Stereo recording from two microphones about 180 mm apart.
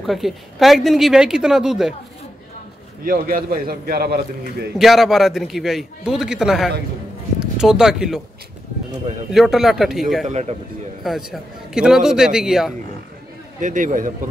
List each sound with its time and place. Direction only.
0.0 s speech: centre (ahead or behind)
3.0 s a man's voice: 50° right (ahead or behind)
4.7 s speech: centre (ahead or behind)
9.3 s speech: centre (ahead or behind)
10.2 s speech: 40° right (ahead or behind)
11.1 s speech: centre (ahead or behind)
13.6 s a man's voice: 45° right (ahead or behind)